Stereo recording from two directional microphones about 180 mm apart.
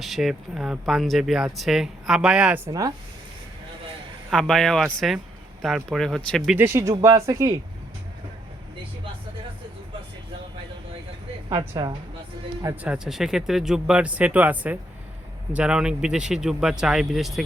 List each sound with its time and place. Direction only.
0.0 s speech: centre (ahead or behind)
2.6 s a woman's voice: 20° right (ahead or behind)
4.3 s speech: centre (ahead or behind)
6.6 s speech: 15° right (ahead or behind)
11.4 s a woman's voice: 20° right (ahead or behind)
12.8 s speech: 5° right (ahead or behind)